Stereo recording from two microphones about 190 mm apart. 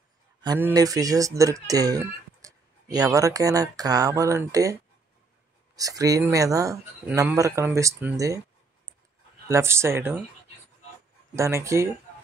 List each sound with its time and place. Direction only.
0.6 s speech: 15° right (ahead or behind)
5.8 s speech: 20° right (ahead or behind)
9.5 s speech: 15° right (ahead or behind)
11.3 s speech: 15° right (ahead or behind)